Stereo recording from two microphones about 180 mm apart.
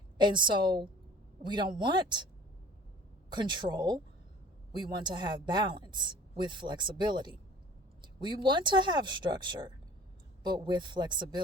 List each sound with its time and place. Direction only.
0.2 s a man's voice: 25° right (ahead or behind)
3.2 s speech: 25° right (ahead or behind)